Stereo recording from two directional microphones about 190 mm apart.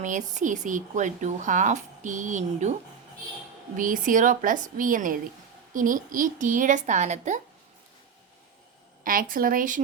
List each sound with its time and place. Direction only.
0.0 s speech: 40° right (ahead or behind)
3.8 s a woman's voice: 45° right (ahead or behind)
9.3 s a woman's voice: 45° right (ahead or behind)